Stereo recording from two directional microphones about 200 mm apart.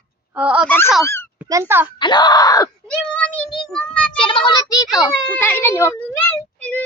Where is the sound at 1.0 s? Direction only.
10° left (ahead or behind).